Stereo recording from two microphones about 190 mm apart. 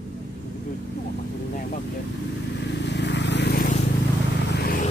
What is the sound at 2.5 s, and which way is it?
Vehicle, 65° left (ahead or behind).